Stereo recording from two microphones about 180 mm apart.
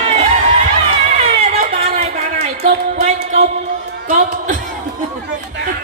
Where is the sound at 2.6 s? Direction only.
35° right (ahead or behind).